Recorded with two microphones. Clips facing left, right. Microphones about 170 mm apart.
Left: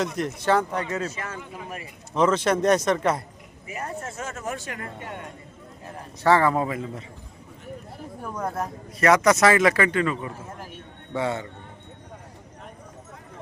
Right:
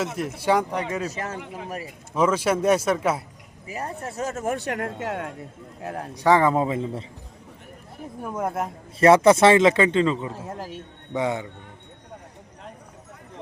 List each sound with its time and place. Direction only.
0.2 s speech: 10° right (ahead or behind)
1.1 s speech: 40° right (ahead or behind)
2.1 s speech: 10° right (ahead or behind)
3.7 s speech: 35° right (ahead or behind)
4.5 s speech: 65° right (ahead or behind)
6.2 s a man's voice: 15° right (ahead or behind)
8.2 s a man's voice: 20° right (ahead or behind)
10.5 s a sound: 40° right (ahead or behind)
11.1 s speech: 15° right (ahead or behind)